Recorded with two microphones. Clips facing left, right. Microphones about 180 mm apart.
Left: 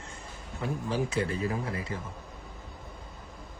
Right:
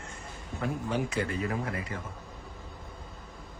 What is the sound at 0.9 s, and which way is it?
Speech, 30° left (ahead or behind).